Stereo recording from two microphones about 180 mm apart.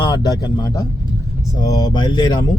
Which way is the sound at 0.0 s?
25° left (ahead or behind).